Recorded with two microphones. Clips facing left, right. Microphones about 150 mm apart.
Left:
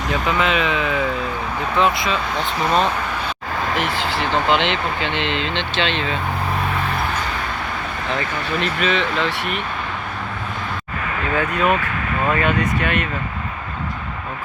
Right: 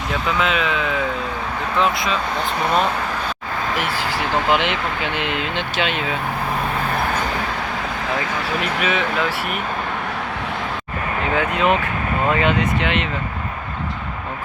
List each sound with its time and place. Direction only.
0.1 s speech: centre (ahead or behind)
3.8 s speech: 10° right (ahead or behind)
8.6 s speech: 10° right (ahead or behind)
11.3 s speech: 20° right (ahead or behind)